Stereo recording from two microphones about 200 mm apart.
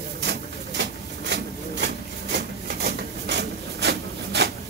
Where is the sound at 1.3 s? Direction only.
60° right (ahead or behind).